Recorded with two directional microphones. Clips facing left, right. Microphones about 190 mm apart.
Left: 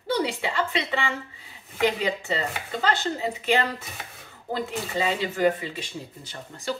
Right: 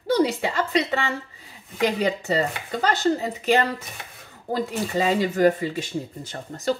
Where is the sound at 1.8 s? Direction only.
40° right (ahead or behind).